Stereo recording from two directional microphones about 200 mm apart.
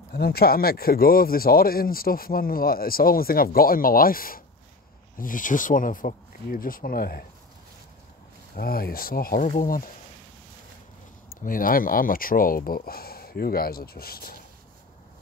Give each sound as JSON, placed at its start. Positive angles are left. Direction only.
{"t": 0.1, "sound": "speech", "side_deg": 50}
{"t": 8.5, "sound": "speech", "side_deg": 50}
{"t": 11.4, "sound": "speech", "side_deg": 45}